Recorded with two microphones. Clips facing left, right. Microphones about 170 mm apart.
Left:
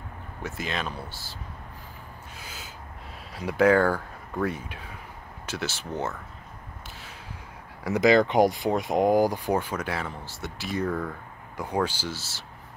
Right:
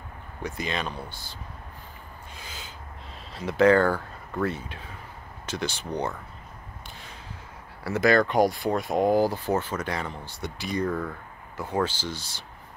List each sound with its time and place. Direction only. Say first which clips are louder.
0.4 s speech: right 1 dB; centre (ahead or behind)
2.3 s a sound: right 1 dB; 10° left (ahead or behind)
3.3 s speech: right 1 dB; 10° left (ahead or behind)
7.8 s speech: left 2 dB; 15° left (ahead or behind); by 11.1 s 5° right (ahead or behind)
11.5 s speech: even; 15° left (ahead or behind)